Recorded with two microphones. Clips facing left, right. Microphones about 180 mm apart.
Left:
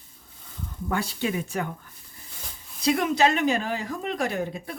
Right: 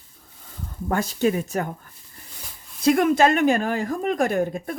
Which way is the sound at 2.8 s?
50° right (ahead or behind).